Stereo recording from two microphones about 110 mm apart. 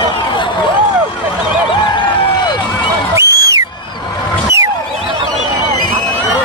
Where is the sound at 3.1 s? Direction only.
30° right (ahead or behind).